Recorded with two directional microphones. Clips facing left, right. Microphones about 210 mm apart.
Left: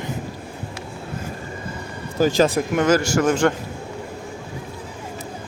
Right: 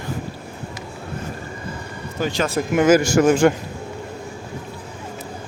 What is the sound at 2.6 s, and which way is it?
Speech, 5° right (ahead or behind).